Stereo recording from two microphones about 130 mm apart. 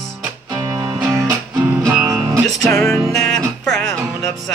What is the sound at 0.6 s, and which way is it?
Music, 30° right (ahead or behind).